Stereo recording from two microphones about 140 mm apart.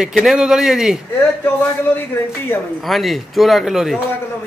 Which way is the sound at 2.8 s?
Centre (ahead or behind).